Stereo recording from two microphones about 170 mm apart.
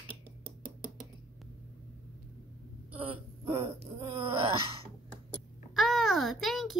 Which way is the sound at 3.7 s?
30° right (ahead or behind).